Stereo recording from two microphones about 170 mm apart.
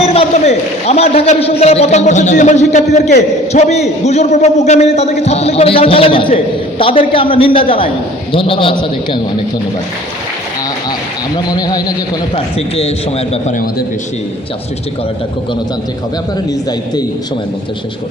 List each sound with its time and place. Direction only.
0.0 s a man's voice: 35° left (ahead or behind)
11.3 s speech: 20° left (ahead or behind)
12.5 s a man's voice: 35° left (ahead or behind)